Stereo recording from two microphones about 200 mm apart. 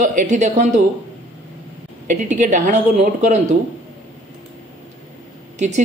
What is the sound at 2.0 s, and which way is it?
Speech, 40° right (ahead or behind).